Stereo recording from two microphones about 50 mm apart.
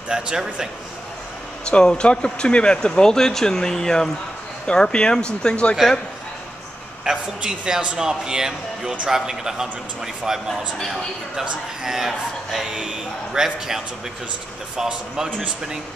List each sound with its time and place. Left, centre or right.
0.1 s a man's voice: centre
1.7 s speech: centre
7.1 s a man's voice: centre